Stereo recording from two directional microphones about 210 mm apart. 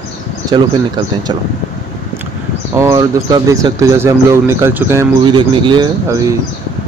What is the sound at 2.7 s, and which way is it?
Speech, 15° right (ahead or behind).